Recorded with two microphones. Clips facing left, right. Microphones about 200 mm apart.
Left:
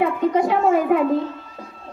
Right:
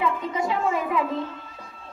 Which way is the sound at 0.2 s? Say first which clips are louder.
Left 8 dB; 60° left (ahead or behind).